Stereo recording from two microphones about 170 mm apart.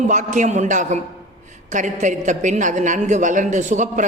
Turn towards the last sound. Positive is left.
turn(degrees=-45)  # may be behind; listen again after turning